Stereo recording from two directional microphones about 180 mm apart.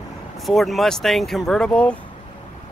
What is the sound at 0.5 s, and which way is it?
Speech, centre (ahead or behind).